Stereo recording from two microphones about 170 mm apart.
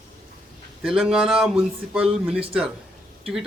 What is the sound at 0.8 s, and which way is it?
Speech, 5° right (ahead or behind).